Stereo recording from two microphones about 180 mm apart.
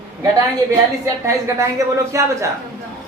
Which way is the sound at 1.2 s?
15° right (ahead or behind).